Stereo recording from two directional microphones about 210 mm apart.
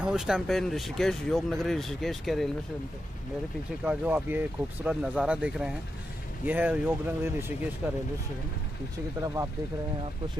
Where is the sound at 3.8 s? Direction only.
10° right (ahead or behind).